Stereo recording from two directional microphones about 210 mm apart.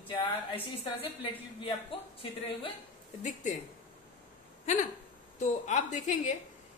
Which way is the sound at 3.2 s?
35° left (ahead or behind).